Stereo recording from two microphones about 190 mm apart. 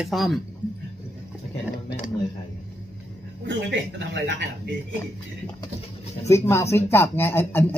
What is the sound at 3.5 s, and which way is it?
Speech, 65° right (ahead or behind).